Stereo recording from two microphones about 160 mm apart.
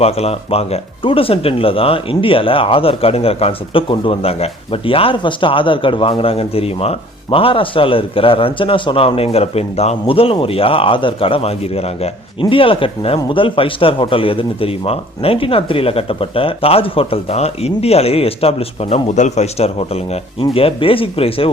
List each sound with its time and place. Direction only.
0.0 s speech: 40° left (ahead or behind)